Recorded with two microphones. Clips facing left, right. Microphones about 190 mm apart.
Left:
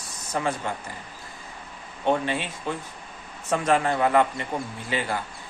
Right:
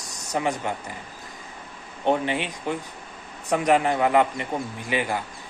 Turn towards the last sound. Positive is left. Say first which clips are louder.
# right 2 dB
turn(degrees=-15)  # may be behind; listen again after turning